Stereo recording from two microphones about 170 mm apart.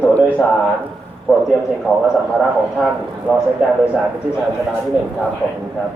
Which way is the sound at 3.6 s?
5° right (ahead or behind).